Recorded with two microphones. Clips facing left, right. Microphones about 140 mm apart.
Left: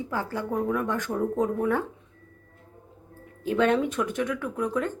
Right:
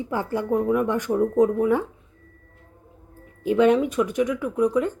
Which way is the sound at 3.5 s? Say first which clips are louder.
Right 5 dB; 10° right (ahead or behind).